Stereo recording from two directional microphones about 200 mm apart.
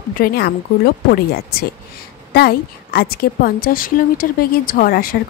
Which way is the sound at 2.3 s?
50° left (ahead or behind).